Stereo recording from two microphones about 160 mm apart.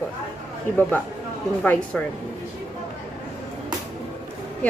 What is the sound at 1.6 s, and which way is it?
Speech, 10° left (ahead or behind).